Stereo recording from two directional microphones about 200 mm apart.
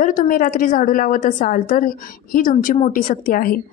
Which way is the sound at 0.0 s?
45° left (ahead or behind).